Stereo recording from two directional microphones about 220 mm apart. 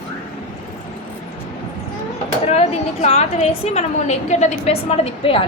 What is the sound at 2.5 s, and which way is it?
A woman's voice, 30° left (ahead or behind).